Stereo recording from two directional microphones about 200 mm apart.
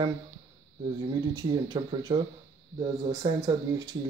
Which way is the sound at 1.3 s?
20° right (ahead or behind).